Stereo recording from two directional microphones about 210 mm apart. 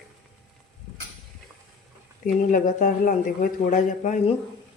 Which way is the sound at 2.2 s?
40° left (ahead or behind).